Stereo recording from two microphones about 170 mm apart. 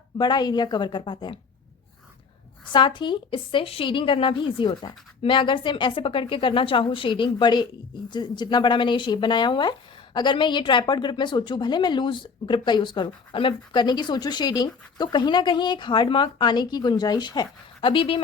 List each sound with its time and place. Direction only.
0.2 s a woman's voice: 25° left (ahead or behind)
2.7 s a woman's voice: 25° left (ahead or behind)